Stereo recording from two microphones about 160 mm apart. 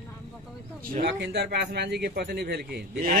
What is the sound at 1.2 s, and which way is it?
A man's voice, 90° right.